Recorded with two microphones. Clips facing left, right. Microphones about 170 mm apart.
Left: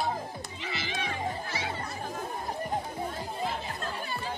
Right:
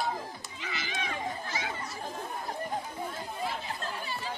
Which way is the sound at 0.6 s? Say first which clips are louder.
Left 1 dB; 30° left (ahead or behind).